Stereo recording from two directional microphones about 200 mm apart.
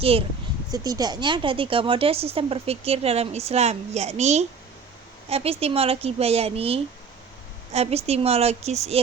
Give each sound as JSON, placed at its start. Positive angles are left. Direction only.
{"t": 0.0, "sound": "speech", "side_deg": -30}
{"t": 0.7, "sound": "a woman's voice", "side_deg": -20}